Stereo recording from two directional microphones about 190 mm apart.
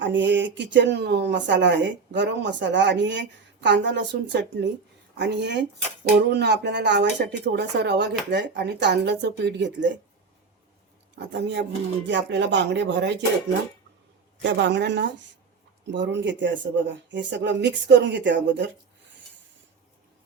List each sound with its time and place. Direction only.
0.0 s speech: 70° right (ahead or behind)
11.1 s speech: 65° right (ahead or behind)
14.4 s speech: 65° right (ahead or behind)